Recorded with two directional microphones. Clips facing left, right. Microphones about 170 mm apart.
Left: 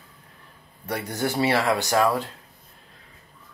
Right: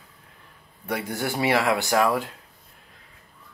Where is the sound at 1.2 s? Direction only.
15° right (ahead or behind).